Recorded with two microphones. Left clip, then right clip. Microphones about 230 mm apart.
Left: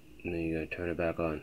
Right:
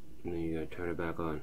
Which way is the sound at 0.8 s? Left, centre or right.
Left.